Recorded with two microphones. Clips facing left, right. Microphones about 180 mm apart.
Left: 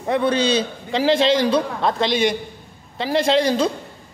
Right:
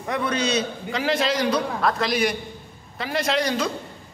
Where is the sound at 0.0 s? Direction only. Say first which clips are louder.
Left 6 dB; 30° left (ahead or behind).